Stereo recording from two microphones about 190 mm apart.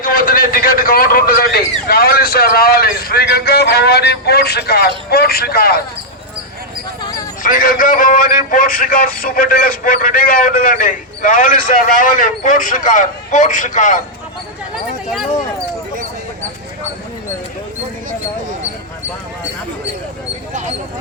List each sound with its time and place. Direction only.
0.0 s a man's voice: 50° left (ahead or behind)
7.4 s a man's voice: 45° left (ahead or behind)
15.1 s speech: centre (ahead or behind)
20.5 s a sound: 40° right (ahead or behind)